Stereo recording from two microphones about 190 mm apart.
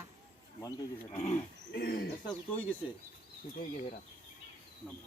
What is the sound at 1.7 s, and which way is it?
Speech, 50° left (ahead or behind).